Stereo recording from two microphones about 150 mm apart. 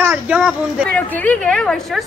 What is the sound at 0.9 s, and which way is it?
A woman's voice, 10° left (ahead or behind).